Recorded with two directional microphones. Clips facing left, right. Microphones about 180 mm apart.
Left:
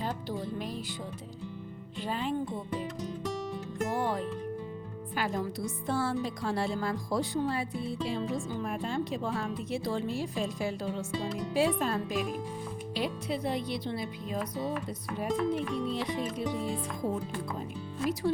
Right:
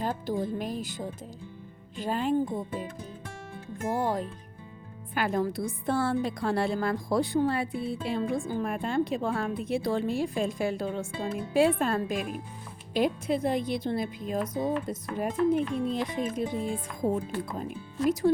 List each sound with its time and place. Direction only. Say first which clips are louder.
0.0 s speech: right 5 dB; 45° right (ahead or behind)
3.9 s speech: right 4 dB; 45° right (ahead or behind)
5.1 s speech: right 5 dB; 55° right (ahead or behind)